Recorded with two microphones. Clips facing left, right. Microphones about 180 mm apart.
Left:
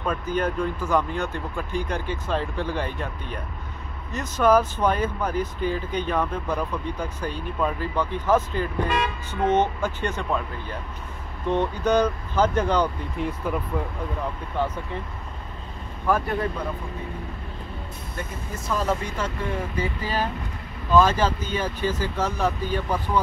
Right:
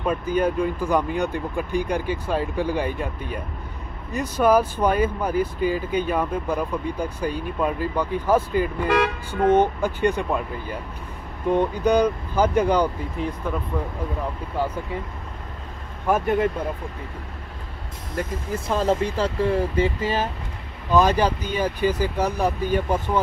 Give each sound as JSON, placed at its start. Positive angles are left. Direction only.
{"t": 0.0, "sound": "speech", "side_deg": -10}
{"t": 8.8, "sound": "speech", "side_deg": -90}
{"t": 9.6, "sound": "speech", "side_deg": -15}
{"t": 13.2, "sound": "speech", "side_deg": 0}
{"t": 14.6, "sound": "speech", "side_deg": -10}
{"t": 16.1, "sound": "speech", "side_deg": -20}
{"t": 18.5, "sound": "speech", "side_deg": -30}